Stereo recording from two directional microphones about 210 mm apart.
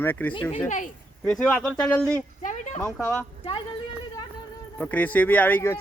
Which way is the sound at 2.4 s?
35° left (ahead or behind).